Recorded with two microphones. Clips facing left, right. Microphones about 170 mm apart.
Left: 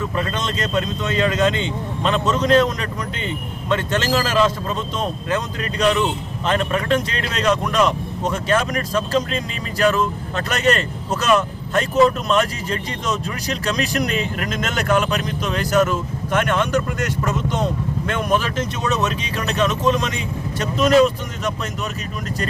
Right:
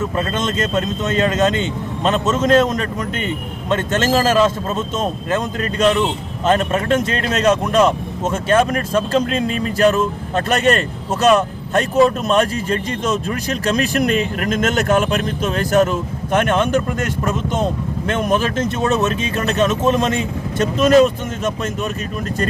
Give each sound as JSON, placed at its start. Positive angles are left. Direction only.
{"t": 0.0, "sound": "speech", "side_deg": -45}